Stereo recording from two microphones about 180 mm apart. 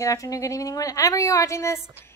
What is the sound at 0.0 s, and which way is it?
Speech, 20° left (ahead or behind).